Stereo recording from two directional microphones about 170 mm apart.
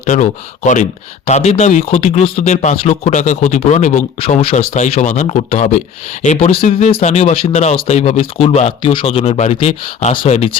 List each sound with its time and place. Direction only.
0.0 s speech: 45° left (ahead or behind)